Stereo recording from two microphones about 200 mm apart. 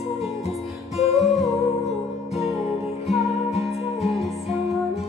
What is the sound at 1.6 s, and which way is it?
Music, 30° left (ahead or behind).